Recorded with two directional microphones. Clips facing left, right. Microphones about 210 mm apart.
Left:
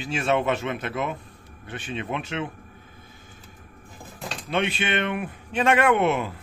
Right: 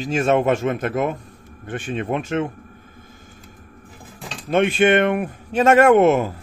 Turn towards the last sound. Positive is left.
turn(degrees=-45)  # may be behind; listen again after turning